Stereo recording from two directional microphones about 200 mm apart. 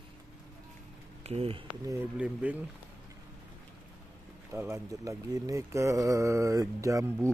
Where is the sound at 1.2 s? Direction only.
30° right (ahead or behind).